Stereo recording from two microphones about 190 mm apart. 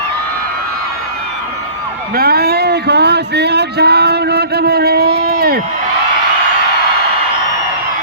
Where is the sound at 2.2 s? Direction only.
55° right (ahead or behind).